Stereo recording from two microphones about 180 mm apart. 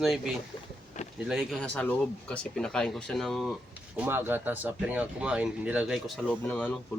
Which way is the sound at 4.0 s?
10° right (ahead or behind).